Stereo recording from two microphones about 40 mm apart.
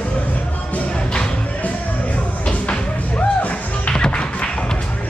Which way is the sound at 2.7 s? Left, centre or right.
Left.